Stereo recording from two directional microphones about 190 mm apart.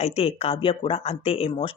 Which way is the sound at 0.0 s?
30° left (ahead or behind).